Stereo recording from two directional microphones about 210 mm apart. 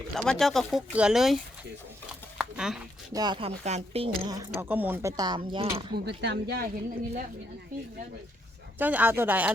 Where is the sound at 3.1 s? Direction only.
20° right (ahead or behind).